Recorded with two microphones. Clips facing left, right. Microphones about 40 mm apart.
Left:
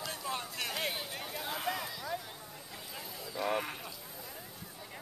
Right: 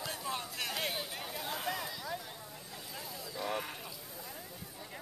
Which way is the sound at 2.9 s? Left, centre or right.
Centre.